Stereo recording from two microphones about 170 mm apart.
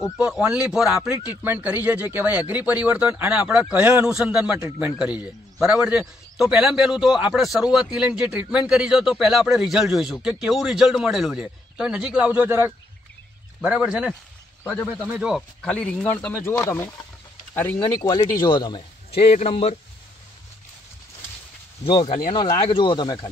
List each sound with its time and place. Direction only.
0.2 s a man's voice: 5° right (ahead or behind)
14.6 s a man's voice: 10° left (ahead or behind)
15.0 s a man's voice: 5° right (ahead or behind); by 19.7 s 40° left (ahead or behind)
21.8 s a man's voice: 25° left (ahead or behind)